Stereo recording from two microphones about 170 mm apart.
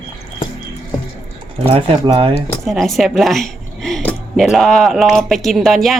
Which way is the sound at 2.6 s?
Centre (ahead or behind).